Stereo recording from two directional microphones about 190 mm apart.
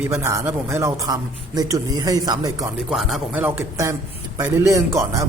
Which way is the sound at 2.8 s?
Centre (ahead or behind).